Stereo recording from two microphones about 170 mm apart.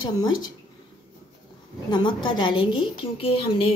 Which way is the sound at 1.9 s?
25° left (ahead or behind).